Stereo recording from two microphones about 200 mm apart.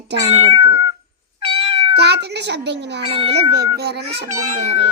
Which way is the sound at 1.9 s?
55° right (ahead or behind).